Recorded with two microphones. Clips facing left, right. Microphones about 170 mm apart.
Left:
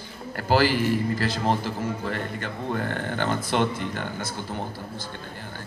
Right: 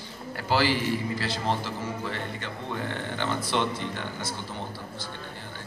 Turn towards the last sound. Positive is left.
turn(degrees=45)  # may be behind; listen again after turning